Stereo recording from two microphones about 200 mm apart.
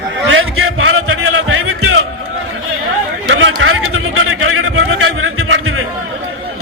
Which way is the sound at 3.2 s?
70° right (ahead or behind).